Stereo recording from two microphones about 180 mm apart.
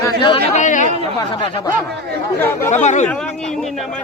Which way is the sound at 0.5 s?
45° left (ahead or behind).